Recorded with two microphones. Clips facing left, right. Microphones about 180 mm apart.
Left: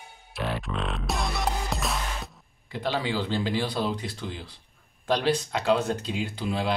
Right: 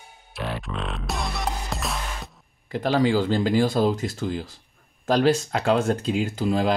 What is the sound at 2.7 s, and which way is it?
Speech, 45° right (ahead or behind).